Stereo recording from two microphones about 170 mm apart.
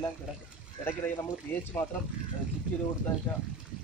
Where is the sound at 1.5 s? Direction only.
15° left (ahead or behind).